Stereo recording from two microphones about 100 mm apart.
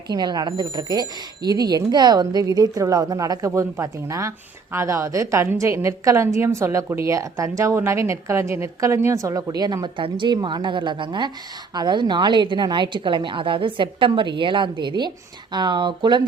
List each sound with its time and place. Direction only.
0.1 s a woman's voice: 45° right (ahead or behind)